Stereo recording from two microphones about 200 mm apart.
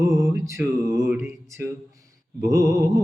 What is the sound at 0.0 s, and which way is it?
Mantra, 15° right (ahead or behind).